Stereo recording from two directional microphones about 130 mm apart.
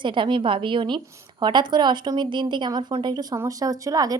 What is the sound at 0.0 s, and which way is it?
A woman's voice, 40° right (ahead or behind).